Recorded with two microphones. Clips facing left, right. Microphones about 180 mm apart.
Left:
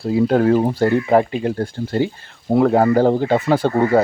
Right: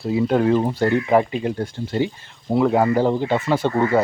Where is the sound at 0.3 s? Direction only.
40° left (ahead or behind).